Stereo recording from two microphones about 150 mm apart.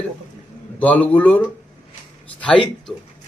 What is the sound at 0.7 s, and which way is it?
A man's voice, 10° left (ahead or behind).